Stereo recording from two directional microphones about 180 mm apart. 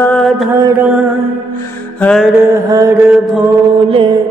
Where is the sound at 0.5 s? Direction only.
15° right (ahead or behind).